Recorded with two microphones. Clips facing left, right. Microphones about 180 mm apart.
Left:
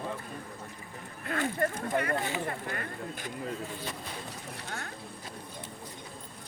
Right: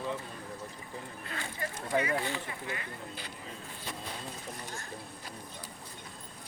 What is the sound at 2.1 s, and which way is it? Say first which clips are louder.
Speech: left 1 dB; 15° left (ahead or behind).